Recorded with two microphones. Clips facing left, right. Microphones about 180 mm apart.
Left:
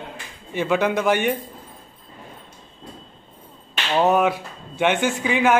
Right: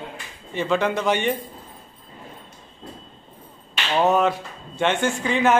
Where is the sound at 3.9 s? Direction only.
10° left (ahead or behind).